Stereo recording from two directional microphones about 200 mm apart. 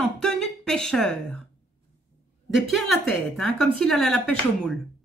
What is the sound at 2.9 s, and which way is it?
A woman's voice, centre (ahead or behind).